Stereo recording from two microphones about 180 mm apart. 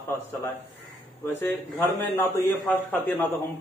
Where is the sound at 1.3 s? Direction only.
10° left (ahead or behind).